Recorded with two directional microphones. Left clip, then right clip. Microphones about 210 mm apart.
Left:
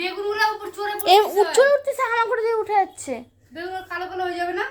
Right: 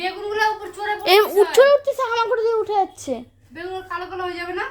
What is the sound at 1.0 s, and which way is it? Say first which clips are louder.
A child's voice: right 1 dB; 20° right (ahead or behind).